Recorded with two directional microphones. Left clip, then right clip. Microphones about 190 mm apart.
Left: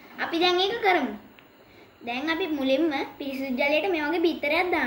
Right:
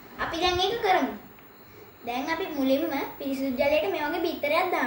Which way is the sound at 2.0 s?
15° left (ahead or behind).